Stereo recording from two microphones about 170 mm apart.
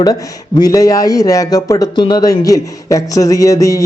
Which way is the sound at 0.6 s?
20° left (ahead or behind).